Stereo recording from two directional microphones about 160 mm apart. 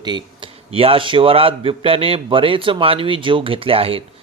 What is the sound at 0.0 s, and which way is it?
Speech, 30° right (ahead or behind).